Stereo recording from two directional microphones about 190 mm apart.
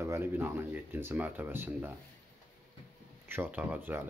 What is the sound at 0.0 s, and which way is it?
Speech, 15° right (ahead or behind).